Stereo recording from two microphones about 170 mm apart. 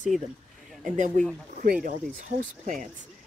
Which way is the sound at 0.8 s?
45° right (ahead or behind).